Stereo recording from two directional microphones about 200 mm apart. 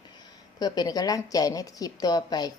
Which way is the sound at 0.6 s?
20° left (ahead or behind).